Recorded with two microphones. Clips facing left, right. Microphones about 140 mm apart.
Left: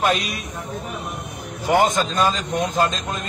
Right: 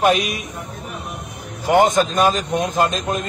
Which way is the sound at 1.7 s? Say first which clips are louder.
Right 3 dB; 20° right (ahead or behind).